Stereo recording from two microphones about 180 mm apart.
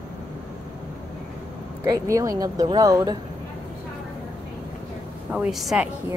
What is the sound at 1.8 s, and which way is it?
Speech, 15° right (ahead or behind).